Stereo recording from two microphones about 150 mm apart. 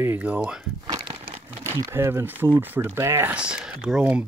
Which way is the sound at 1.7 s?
20° right (ahead or behind).